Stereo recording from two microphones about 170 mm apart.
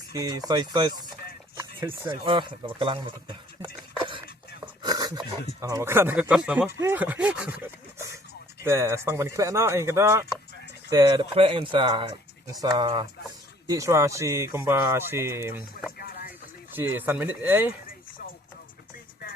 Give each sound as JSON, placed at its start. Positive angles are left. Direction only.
{"t": 0.1, "sound": "speech", "side_deg": -20}
{"t": 4.8, "sound": "a sound", "side_deg": -25}
{"t": 5.5, "sound": "speech", "side_deg": -20}
{"t": 16.0, "sound": "music", "side_deg": 65}
{"t": 16.7, "sound": "speech", "side_deg": -10}